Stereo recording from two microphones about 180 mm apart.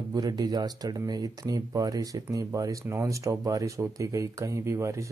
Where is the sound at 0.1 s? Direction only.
20° right (ahead or behind).